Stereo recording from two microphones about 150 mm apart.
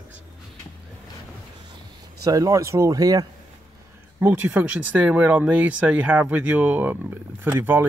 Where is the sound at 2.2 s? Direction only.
25° right (ahead or behind).